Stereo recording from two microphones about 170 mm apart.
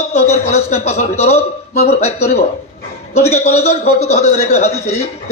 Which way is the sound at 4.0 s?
40° left (ahead or behind).